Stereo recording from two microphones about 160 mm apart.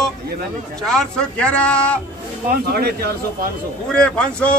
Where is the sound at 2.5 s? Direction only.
80° right.